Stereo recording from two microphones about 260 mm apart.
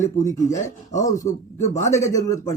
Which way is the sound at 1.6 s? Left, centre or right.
Left.